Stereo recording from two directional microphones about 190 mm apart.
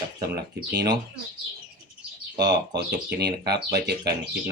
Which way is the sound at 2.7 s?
60° right (ahead or behind).